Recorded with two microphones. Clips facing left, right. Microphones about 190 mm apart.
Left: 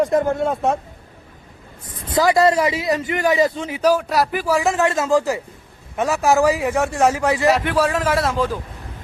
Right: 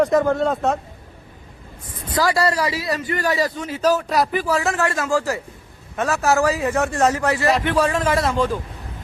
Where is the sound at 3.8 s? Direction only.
10° left (ahead or behind).